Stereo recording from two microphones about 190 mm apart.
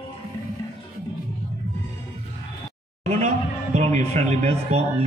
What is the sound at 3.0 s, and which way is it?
Speech, 35° right (ahead or behind).